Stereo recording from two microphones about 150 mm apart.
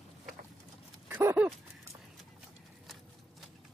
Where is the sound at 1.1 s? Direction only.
15° right (ahead or behind).